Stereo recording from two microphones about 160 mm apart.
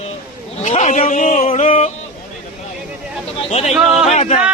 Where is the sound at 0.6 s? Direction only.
45° left (ahead or behind).